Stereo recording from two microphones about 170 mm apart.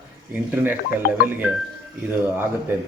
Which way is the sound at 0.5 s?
10° right (ahead or behind).